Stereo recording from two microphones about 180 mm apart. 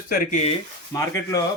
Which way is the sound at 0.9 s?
15° left (ahead or behind).